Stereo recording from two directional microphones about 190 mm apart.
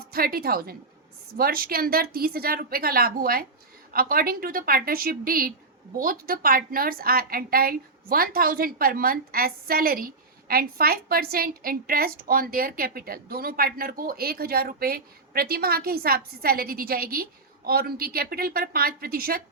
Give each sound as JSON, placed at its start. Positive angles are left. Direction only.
{"t": 0.1, "sound": "a woman's voice", "side_deg": -50}